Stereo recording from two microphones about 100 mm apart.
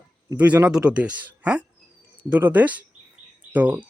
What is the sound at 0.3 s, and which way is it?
Speech, 15° right (ahead or behind).